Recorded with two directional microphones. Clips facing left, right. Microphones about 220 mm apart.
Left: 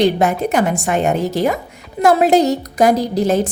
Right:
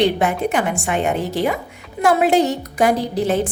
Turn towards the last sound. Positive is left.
turn(degrees=40)  # may be behind; listen again after turning